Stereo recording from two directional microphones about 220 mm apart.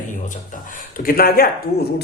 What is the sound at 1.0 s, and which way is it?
Speech, 40° left (ahead or behind).